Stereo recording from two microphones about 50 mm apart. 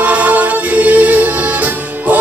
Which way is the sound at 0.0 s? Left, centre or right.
Right.